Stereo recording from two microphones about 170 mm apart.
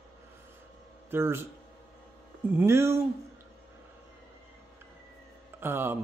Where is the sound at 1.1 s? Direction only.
15° right (ahead or behind).